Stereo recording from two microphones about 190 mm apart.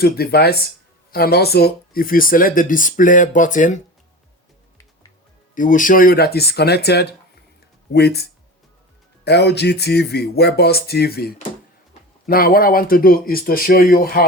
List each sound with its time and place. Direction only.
0.0 s music: 55° left (ahead or behind)
1.1 s speech: 55° left (ahead or behind)
5.5 s music: 45° left (ahead or behind)
12.2 s speech: 50° left (ahead or behind)